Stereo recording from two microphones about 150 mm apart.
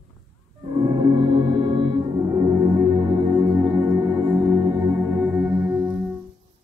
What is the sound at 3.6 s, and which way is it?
Music, 25° right (ahead or behind).